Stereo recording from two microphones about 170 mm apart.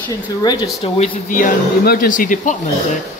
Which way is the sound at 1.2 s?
55° left (ahead or behind).